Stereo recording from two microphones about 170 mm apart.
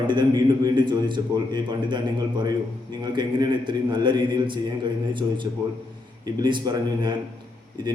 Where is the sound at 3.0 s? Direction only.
25° right (ahead or behind).